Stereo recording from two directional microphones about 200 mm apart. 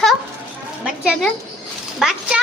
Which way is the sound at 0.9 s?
5° right (ahead or behind).